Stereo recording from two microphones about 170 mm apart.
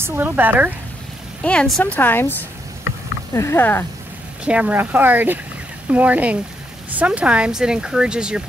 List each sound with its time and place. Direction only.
0.0 s speech: 10° right (ahead or behind)
1.4 s a woman's voice: 5° left (ahead or behind)
3.3 s a woman's voice: 15° left (ahead or behind)
4.5 s speech: 10° right (ahead or behind)